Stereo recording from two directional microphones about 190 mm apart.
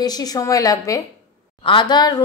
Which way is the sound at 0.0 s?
20° left (ahead or behind).